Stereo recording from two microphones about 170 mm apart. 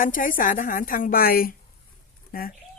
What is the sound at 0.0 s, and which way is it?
Speech, 50° left (ahead or behind).